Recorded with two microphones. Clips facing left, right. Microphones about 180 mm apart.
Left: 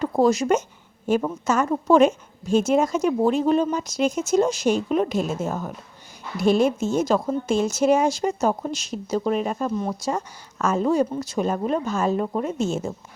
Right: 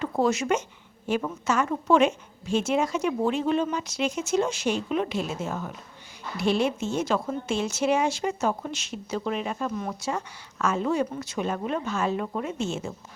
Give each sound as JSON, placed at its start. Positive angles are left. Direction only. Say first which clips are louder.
{"t": 0.0, "sound": "a woman's voice", "louder": "left 5 dB", "side_deg": 40}